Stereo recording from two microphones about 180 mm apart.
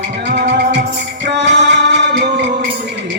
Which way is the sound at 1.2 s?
80° right.